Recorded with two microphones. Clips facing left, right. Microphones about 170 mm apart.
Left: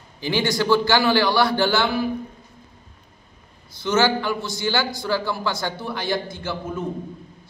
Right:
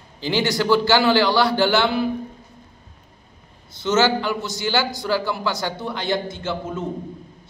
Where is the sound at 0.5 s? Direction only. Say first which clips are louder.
Right 1 dB; 15° right (ahead or behind).